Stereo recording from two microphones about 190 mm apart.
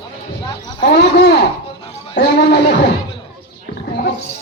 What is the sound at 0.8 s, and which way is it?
Speech, 60° left (ahead or behind).